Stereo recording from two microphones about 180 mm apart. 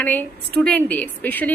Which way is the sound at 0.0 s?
10° left (ahead or behind).